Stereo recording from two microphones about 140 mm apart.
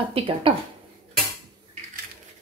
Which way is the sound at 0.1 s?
40° right (ahead or behind).